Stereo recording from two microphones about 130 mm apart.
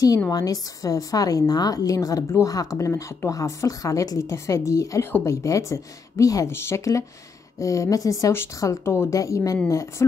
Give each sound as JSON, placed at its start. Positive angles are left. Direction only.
{"t": 0.3, "sound": "a woman's voice", "side_deg": 30}